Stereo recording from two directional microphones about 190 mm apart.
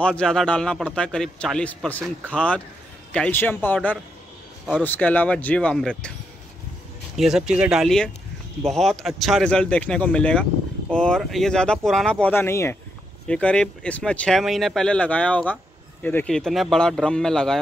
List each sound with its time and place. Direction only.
0.0 s a man's voice: 5° left (ahead or behind)
7.2 s a man's voice: 5° right (ahead or behind)